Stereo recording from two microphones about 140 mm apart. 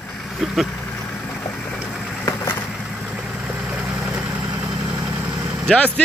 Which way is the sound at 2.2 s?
20° left (ahead or behind).